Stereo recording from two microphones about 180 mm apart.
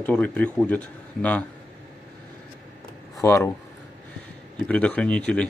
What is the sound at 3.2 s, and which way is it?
Speech, 15° left (ahead or behind).